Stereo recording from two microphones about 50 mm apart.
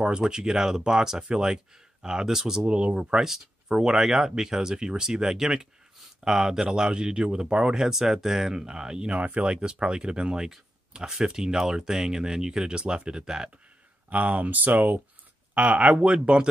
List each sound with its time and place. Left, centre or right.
0.0 s speech: centre
2.6 s speech: right
14.0 s speech: right